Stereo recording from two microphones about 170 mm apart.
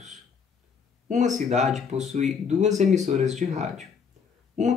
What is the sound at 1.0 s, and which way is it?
Speech, 45° right (ahead or behind).